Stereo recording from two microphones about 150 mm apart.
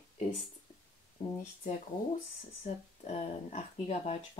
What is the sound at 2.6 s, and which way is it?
Speech, 55° left (ahead or behind).